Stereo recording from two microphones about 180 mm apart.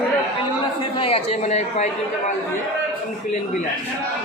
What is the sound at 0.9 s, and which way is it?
Speech, 30° left (ahead or behind).